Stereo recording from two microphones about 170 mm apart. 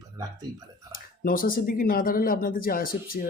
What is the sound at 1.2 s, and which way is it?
Speech, 55° left (ahead or behind).